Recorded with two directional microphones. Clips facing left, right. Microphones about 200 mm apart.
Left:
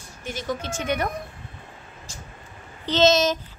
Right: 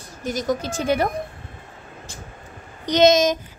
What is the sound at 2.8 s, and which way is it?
Speech, 15° right (ahead or behind).